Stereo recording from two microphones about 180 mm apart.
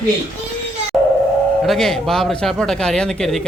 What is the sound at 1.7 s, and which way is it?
A man's voice, centre (ahead or behind).